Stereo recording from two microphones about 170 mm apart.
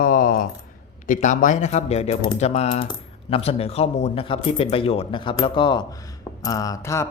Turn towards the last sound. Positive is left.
turn(degrees=15)  # may be behind; listen again after turning